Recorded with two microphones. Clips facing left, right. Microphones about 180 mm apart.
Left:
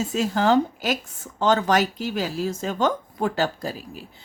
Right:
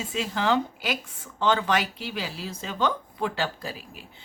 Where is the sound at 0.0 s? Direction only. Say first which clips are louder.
Left 6 dB; 40° left (ahead or behind).